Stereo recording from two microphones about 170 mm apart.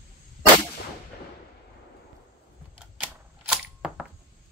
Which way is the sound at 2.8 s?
5° right (ahead or behind).